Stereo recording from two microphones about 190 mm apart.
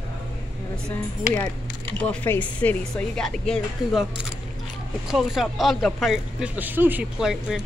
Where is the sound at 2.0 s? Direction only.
10° left (ahead or behind).